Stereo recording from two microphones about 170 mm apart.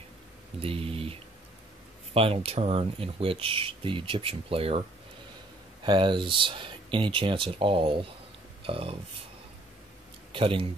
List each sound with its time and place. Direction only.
0.6 s speech: 35° right (ahead or behind)
2.1 s speech: 35° right (ahead or behind)
5.9 s speech: 30° right (ahead or behind)
10.3 s speech: 30° right (ahead or behind)